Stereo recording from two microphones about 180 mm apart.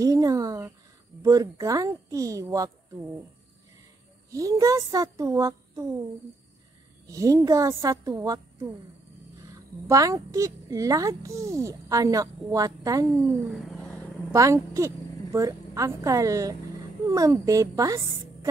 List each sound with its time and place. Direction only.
0.0 s speech: 20° right (ahead or behind)
4.3 s speech: 20° right (ahead or behind)
7.1 s a child's voice: 20° right (ahead or behind)
9.8 s a child's voice: 20° right (ahead or behind)
13.5 s a sound: centre (ahead or behind)
14.3 s a woman's voice: 15° right (ahead or behind)